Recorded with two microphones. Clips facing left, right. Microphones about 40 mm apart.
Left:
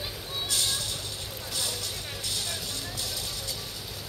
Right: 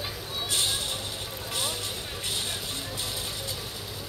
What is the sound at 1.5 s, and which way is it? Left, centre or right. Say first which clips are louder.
Vehicle: right 2 dB; right.